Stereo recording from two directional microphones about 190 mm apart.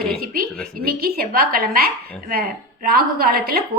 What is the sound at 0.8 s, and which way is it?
A woman's voice, 55° right (ahead or behind).